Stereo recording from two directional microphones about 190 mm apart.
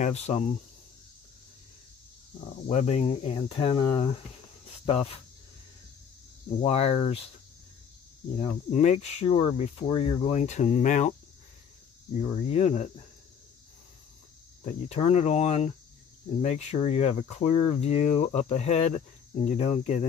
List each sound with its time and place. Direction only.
0.0 s speech: 35° left (ahead or behind)
2.5 s speech: 40° left (ahead or behind)
6.6 s speech: 35° left (ahead or behind)
8.4 s speech: 35° left (ahead or behind)
12.2 s speech: 35° left (ahead or behind)
14.6 s speech: 35° left (ahead or behind)